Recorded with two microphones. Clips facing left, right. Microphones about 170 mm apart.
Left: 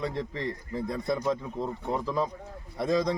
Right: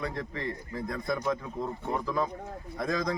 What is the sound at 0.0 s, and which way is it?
A man's voice, 30° left (ahead or behind).